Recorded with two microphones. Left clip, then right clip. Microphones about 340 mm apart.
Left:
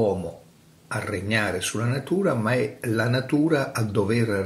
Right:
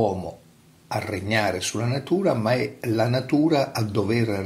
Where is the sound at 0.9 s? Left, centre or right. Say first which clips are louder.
Right 1 dB; centre.